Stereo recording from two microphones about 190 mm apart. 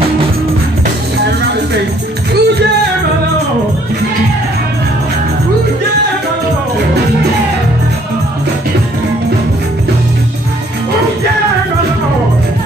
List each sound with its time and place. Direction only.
1.1 s music: 60° right (ahead or behind)